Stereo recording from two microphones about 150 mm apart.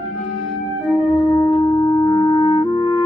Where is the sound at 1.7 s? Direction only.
25° left (ahead or behind).